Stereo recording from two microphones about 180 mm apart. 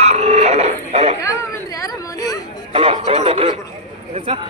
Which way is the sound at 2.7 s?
35° right (ahead or behind).